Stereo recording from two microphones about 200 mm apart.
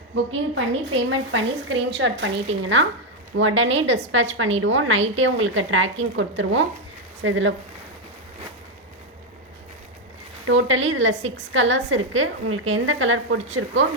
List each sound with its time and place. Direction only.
0.3 s a woman's voice: 70° right (ahead or behind)
10.4 s a woman's voice: 75° right (ahead or behind)